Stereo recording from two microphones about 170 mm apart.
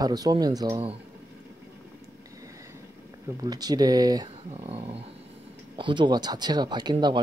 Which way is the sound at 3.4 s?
25° right (ahead or behind).